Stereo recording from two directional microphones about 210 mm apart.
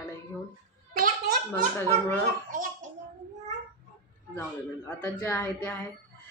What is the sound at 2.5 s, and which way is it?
Speech, 40° right (ahead or behind).